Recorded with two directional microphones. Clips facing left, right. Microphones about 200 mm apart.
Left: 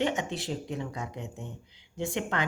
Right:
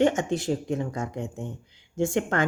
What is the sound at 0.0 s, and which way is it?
Speech, 45° right (ahead or behind).